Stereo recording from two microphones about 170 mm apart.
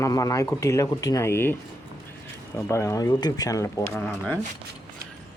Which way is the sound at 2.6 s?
15° left (ahead or behind).